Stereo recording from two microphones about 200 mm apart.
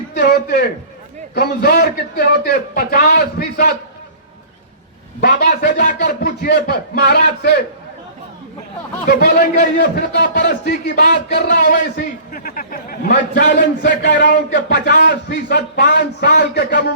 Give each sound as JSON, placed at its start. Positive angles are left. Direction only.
{"t": 0.1, "sound": "a man's voice", "side_deg": 55}
{"t": 5.2, "sound": "a man's voice", "side_deg": 45}
{"t": 9.0, "sound": "a man's voice", "side_deg": 45}